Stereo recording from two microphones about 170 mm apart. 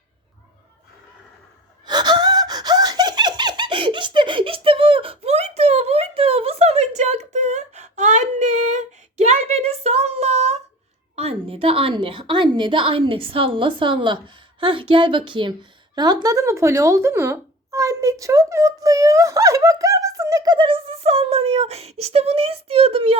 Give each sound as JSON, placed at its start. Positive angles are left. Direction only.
{"t": 1.9, "sound": "gasp", "side_deg": -25}
{"t": 11.1, "sound": "a woman's voice", "side_deg": -35}
{"t": 16.0, "sound": "a sound", "side_deg": -20}